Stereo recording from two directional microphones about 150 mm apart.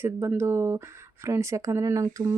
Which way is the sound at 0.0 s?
15° right (ahead or behind).